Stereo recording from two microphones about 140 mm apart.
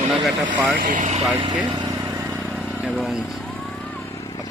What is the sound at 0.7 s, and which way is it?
Speech, 70° right (ahead or behind).